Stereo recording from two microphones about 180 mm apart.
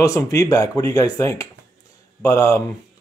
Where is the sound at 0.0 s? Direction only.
20° left (ahead or behind).